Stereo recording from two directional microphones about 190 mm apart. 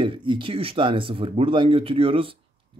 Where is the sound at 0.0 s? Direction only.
25° right (ahead or behind).